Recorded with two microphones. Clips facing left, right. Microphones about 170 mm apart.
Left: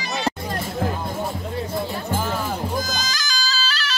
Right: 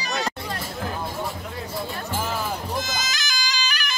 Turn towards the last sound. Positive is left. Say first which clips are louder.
# left 2 dB
turn(degrees=-15)  # may be behind; listen again after turning